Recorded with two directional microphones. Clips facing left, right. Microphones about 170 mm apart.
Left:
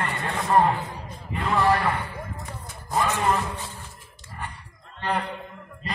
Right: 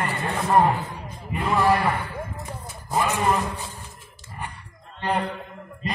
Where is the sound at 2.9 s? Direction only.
10° right (ahead or behind).